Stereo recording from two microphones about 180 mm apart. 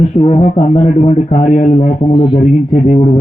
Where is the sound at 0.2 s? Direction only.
35° left (ahead or behind).